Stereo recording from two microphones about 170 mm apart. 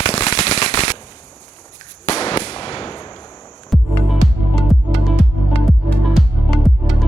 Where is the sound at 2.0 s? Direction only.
35° left (ahead or behind).